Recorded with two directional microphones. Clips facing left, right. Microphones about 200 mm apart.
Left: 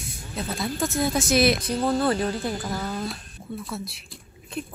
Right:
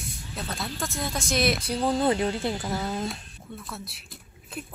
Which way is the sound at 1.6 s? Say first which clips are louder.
Left 1 dB; 15° right (ahead or behind).